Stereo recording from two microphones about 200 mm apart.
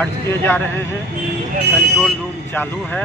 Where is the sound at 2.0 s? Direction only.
10° left (ahead or behind).